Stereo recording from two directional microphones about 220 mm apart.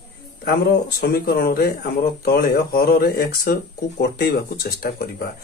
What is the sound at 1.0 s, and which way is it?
Speech, 45° left (ahead or behind).